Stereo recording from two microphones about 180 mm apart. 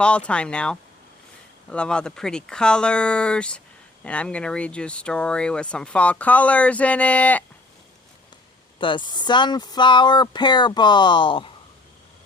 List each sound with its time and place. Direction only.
0.0 s speech: 5° left (ahead or behind)
8.8 s speech: 25° left (ahead or behind)